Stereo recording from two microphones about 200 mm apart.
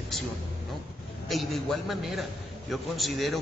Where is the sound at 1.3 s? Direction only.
Centre (ahead or behind).